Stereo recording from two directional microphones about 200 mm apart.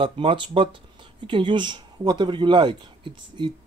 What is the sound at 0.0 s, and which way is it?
Speech, 25° right (ahead or behind).